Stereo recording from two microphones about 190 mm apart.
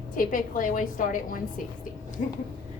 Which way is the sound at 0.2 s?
45° left (ahead or behind).